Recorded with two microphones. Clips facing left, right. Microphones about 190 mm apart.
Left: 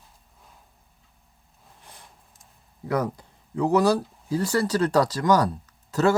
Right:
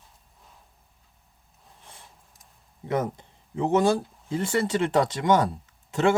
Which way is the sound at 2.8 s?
25° right (ahead or behind).